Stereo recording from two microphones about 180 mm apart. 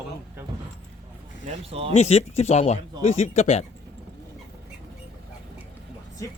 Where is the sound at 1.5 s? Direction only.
35° right (ahead or behind).